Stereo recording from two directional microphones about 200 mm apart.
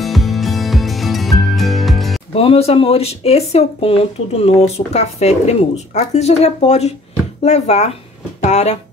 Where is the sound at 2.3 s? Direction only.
30° left (ahead or behind).